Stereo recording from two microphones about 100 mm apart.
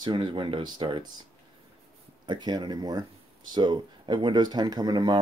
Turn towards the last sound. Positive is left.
turn(degrees=-45)  # may be behind; listen again after turning